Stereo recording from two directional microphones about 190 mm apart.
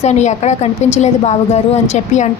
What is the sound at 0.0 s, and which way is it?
A woman's voice, 35° left (ahead or behind).